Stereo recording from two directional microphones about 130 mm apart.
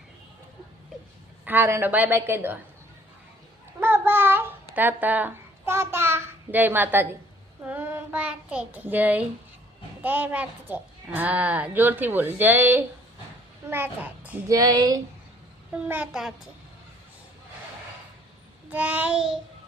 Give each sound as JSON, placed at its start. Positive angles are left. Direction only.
{"t": 1.5, "sound": "a woman's voice", "side_deg": -15}
{"t": 3.8, "sound": "babbling", "side_deg": -15}
{"t": 7.6, "sound": "child singing", "side_deg": -15}
{"t": 10.0, "sound": "a woman's voice", "side_deg": -15}
{"t": 14.5, "sound": "speech", "side_deg": -30}
{"t": 15.7, "sound": "a woman's voice", "side_deg": -10}
{"t": 18.7, "sound": "a woman's voice", "side_deg": -10}